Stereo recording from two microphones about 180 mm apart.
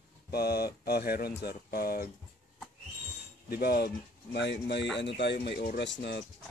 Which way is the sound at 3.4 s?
60° left (ahead or behind).